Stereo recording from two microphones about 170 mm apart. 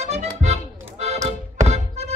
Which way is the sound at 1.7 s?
40° right (ahead or behind).